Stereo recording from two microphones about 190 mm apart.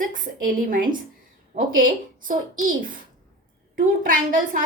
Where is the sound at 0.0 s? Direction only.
45° right (ahead or behind).